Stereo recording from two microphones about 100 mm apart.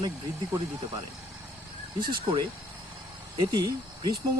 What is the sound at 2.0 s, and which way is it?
Speech, 50° right (ahead or behind).